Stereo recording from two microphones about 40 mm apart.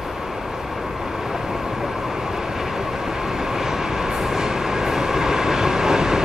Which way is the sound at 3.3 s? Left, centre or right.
Centre.